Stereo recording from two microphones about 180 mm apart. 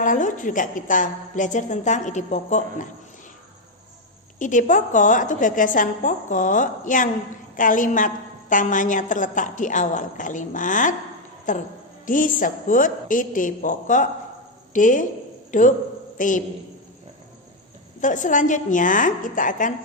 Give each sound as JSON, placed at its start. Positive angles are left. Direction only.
{"t": 0.0, "sound": "a woman's voice", "side_deg": 45}
{"t": 4.4, "sound": "a woman's voice", "side_deg": 45}
{"t": 18.0, "sound": "a woman's voice", "side_deg": 45}